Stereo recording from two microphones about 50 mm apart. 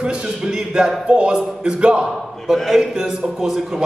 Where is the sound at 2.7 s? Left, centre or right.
Centre.